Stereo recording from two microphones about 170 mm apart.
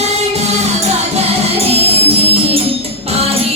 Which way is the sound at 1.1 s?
35° right (ahead or behind).